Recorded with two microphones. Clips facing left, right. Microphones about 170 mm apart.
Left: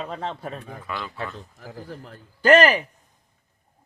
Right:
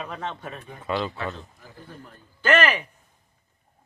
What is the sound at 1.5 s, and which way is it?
Speech, 90° left.